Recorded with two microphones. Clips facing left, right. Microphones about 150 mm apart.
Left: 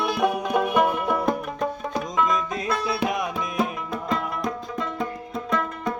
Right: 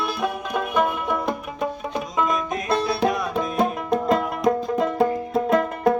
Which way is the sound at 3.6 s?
40° right (ahead or behind).